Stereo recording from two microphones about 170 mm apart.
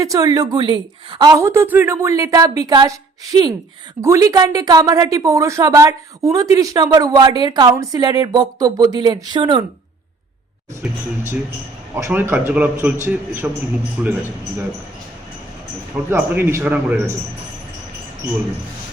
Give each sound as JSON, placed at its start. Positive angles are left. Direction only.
{"t": 0.0, "sound": "a woman's voice", "side_deg": -20}
{"t": 4.0, "sound": "a woman's voice", "side_deg": -20}
{"t": 11.9, "sound": "a man's voice", "side_deg": -15}
{"t": 16.0, "sound": "a man's voice", "side_deg": -10}